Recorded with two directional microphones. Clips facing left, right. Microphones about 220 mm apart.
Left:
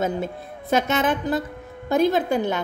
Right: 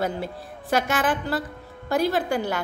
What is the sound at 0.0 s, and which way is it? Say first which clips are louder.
A woman's voice: left 3 dB; 20° left (ahead or behind).